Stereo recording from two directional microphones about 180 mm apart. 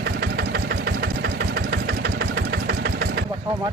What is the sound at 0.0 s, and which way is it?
Engine, 65° right (ahead or behind).